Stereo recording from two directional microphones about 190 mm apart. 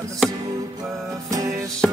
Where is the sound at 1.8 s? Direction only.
5° left (ahead or behind).